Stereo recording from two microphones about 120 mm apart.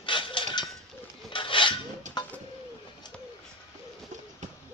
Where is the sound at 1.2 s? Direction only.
45° left (ahead or behind).